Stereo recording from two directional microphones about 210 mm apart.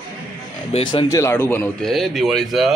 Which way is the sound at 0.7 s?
25° left (ahead or behind).